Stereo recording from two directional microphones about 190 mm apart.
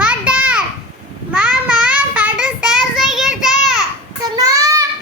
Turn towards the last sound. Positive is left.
turn(degrees=-15)  # may be behind; listen again after turning